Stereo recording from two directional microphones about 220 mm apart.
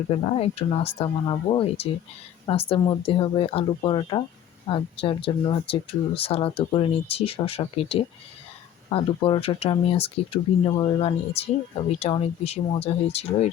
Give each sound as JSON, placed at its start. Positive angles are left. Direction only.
{"t": 0.1, "sound": "speech", "side_deg": 25}